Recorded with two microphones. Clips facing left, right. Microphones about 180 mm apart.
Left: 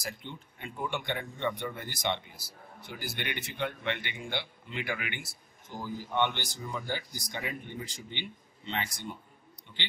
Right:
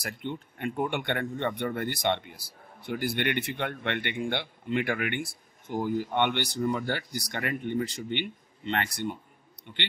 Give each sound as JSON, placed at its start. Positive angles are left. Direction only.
{"t": 0.0, "sound": "speech", "side_deg": -60}